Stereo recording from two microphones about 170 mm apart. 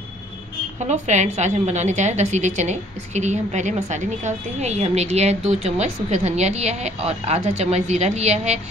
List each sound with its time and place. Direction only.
0.8 s a woman's voice: 45° right (ahead or behind)